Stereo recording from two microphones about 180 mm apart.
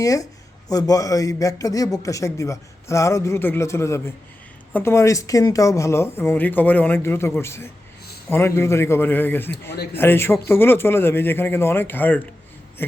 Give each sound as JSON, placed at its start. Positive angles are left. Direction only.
{"t": 0.0, "sound": "a man's voice", "side_deg": 20}